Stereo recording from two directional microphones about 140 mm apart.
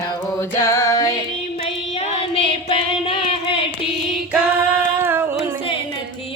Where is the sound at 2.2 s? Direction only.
40° left (ahead or behind).